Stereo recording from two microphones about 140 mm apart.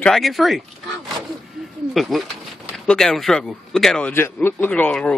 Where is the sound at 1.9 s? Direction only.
Centre (ahead or behind).